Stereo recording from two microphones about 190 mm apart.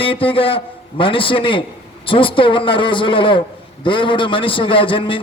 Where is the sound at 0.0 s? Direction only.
30° left (ahead or behind).